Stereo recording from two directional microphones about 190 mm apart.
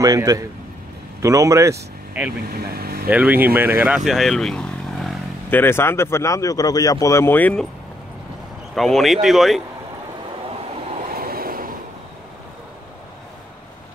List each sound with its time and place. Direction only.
0.0 s a man's voice: 20° right (ahead or behind)
2.5 s speech: 55° right (ahead or behind)
3.1 s speech: 10° right (ahead or behind); by 7.6 s 10° left (ahead or behind)
8.7 s speech: centre (ahead or behind)
11.1 s vehicle: 50° right (ahead or behind)